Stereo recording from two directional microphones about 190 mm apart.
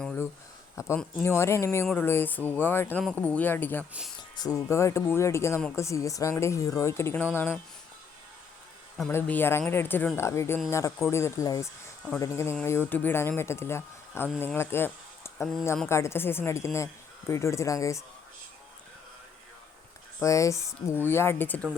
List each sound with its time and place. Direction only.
0.0 s a sound: 10° left (ahead or behind)
0.8 s a woman's voice: 15° left (ahead or behind)
9.0 s a woman's voice: 5° left (ahead or behind)
20.1 s a woman's voice: 15° left (ahead or behind)